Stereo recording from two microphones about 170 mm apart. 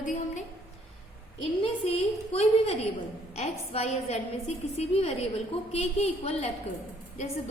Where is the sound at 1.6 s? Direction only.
35° left (ahead or behind).